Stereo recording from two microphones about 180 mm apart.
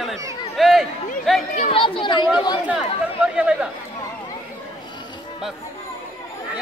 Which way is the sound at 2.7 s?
5° right (ahead or behind).